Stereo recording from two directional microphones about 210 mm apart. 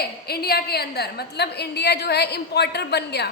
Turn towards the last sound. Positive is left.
turn(degrees=50)  # may be behind; listen again after turning